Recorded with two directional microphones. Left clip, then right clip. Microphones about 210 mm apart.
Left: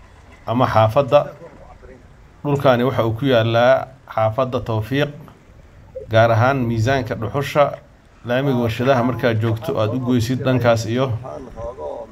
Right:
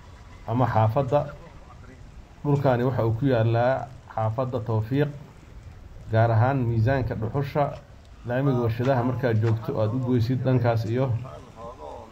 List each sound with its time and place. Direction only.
0.5 s speech: 15° left (ahead or behind)
2.4 s speech: 15° left (ahead or behind)
6.1 s speech: 15° left (ahead or behind)